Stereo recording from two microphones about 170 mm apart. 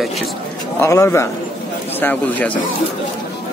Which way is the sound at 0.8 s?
15° left (ahead or behind).